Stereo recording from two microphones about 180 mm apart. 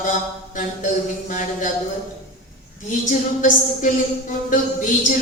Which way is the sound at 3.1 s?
45° left (ahead or behind).